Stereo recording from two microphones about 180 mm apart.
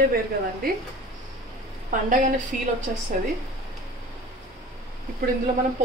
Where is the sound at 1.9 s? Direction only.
45° right (ahead or behind).